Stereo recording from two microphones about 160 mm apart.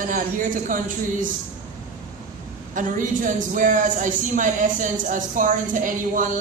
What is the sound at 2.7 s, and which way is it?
A man's voice, 55° right (ahead or behind).